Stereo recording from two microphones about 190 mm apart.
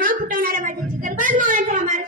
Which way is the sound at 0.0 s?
45° right (ahead or behind).